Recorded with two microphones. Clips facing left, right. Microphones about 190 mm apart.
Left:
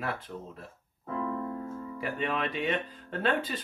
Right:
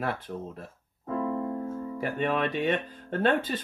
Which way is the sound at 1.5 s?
45° right (ahead or behind).